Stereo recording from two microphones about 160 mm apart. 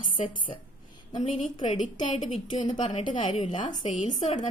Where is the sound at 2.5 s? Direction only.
30° left (ahead or behind).